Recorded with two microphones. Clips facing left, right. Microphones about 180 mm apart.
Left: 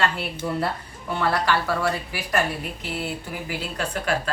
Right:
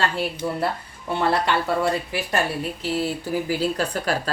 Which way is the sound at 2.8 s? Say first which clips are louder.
Right 5 dB; 35° right (ahead or behind).